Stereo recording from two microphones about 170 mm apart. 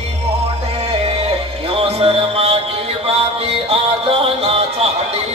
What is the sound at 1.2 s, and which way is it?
Music, 35° right (ahead or behind).